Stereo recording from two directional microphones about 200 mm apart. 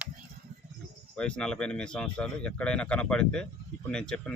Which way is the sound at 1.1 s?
5° left (ahead or behind).